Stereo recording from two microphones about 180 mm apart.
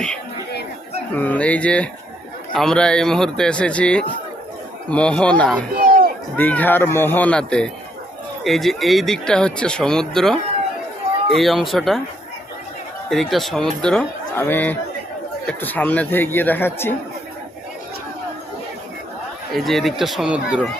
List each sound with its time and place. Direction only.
1.1 s speech: 10° left (ahead or behind)
5.7 s a sound: 55° right (ahead or behind)
6.3 s speech: 10° left (ahead or behind)
11.3 s speech: centre (ahead or behind)
13.1 s speech: centre (ahead or behind)
19.5 s speech: centre (ahead or behind)